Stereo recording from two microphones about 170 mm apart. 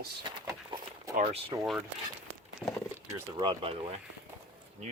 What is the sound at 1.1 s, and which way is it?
Speech, 40° right (ahead or behind).